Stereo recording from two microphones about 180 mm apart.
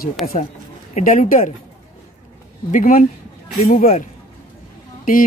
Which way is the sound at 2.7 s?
45° left (ahead or behind).